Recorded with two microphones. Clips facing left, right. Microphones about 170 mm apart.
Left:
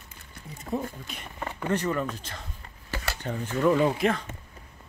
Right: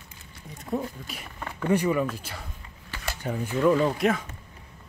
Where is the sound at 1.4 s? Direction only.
15° left (ahead or behind).